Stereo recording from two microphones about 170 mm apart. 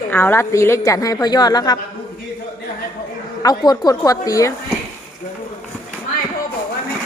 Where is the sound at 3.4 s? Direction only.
25° left (ahead or behind).